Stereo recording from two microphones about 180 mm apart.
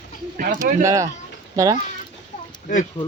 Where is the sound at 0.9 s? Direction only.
15° right (ahead or behind).